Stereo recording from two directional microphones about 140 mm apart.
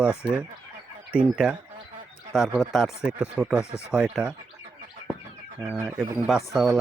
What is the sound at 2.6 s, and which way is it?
Speech, centre (ahead or behind).